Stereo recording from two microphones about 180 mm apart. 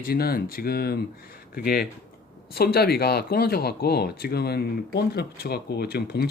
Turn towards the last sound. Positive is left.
turn(degrees=60)  # may be behind; listen again after turning